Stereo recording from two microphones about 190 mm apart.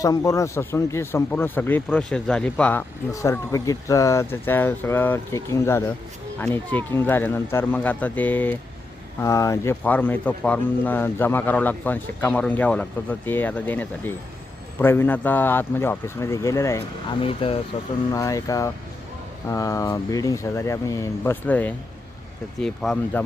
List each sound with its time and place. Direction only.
0.0 s speech: 20° left (ahead or behind)
17.2 s speech: 30° left (ahead or behind)
18.1 s speech: 15° left (ahead or behind)